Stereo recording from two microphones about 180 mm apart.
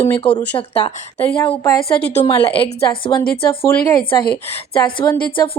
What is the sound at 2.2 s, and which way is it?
A woman's voice, 30° left (ahead or behind).